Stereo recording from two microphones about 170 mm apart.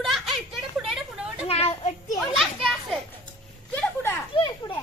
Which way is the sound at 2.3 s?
Centre (ahead or behind).